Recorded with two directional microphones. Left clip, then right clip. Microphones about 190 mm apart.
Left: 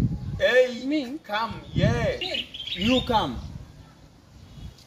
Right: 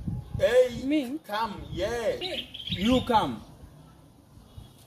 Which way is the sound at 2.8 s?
10° left (ahead or behind).